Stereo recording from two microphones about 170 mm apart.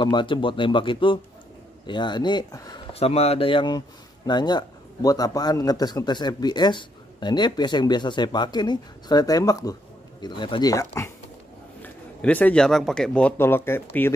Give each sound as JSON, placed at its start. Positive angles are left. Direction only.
{"t": 0.0, "sound": "a man's voice", "side_deg": 30}